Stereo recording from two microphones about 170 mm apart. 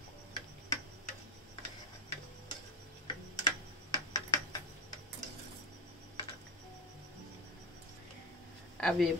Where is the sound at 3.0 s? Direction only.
25° left (ahead or behind).